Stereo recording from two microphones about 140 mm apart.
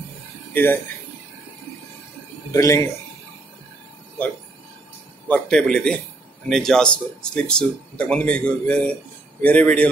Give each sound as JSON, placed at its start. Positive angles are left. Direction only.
{"t": 0.5, "sound": "speech", "side_deg": 15}
{"t": 2.5, "sound": "a man's voice", "side_deg": 20}
{"t": 5.3, "sound": "a man's voice", "side_deg": 5}